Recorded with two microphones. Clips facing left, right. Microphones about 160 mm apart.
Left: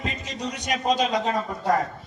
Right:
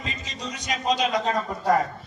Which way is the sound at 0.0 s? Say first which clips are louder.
Left 4 dB; 60° left (ahead or behind).